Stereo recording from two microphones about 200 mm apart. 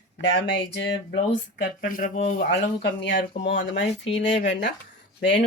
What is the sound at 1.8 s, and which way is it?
Speech, 45° left (ahead or behind).